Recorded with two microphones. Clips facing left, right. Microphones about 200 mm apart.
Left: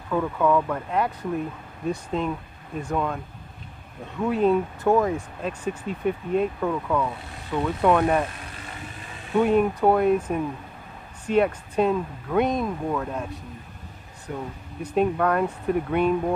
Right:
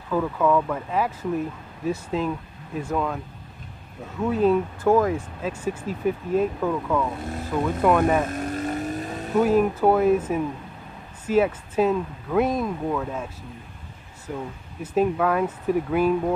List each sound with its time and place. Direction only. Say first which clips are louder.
0.1 s speech: even; centre (ahead or behind)
4.2 s speech: right 1 dB; centre (ahead or behind)
8.3 s vehicle: right 13 dB; 45° right (ahead or behind)
9.4 s speech: right 1 dB; 5° right (ahead or behind)